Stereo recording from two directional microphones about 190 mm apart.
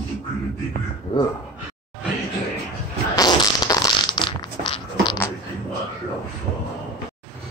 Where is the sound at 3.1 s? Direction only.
20° left (ahead or behind).